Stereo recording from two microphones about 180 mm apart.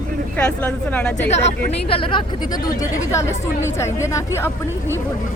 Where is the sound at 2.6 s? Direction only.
15° left (ahead or behind).